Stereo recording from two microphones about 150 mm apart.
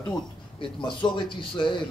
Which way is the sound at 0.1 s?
35° left (ahead or behind).